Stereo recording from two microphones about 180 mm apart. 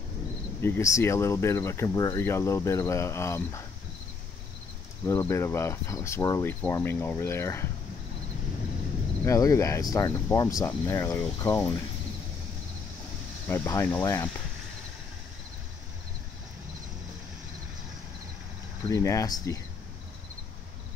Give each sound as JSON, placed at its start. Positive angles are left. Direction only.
{"t": 0.6, "sound": "speech", "side_deg": 15}
{"t": 5.0, "sound": "speech", "side_deg": 15}
{"t": 9.2, "sound": "speech", "side_deg": 15}
{"t": 13.5, "sound": "speech", "side_deg": 15}
{"t": 18.9, "sound": "speech", "side_deg": 20}